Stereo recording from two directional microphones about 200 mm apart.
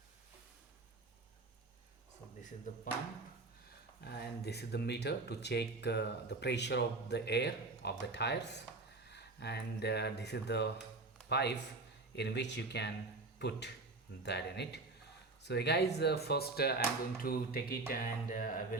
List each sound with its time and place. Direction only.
2.7 s speech: 40° left (ahead or behind)
4.0 s speech: 55° left (ahead or behind)
14.3 s speech: 55° left (ahead or behind)